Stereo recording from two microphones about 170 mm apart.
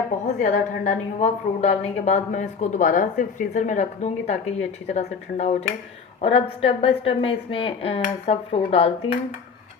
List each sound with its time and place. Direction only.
0.3 s a woman's voice: 50° left (ahead or behind)